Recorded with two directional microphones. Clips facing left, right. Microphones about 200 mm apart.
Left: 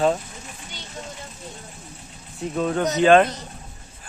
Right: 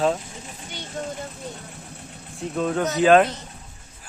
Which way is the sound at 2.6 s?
Centre (ahead or behind).